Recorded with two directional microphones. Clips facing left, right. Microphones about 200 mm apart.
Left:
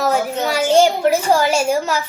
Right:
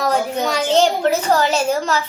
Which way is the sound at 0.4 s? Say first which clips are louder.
Left 3 dB; 10° left (ahead or behind).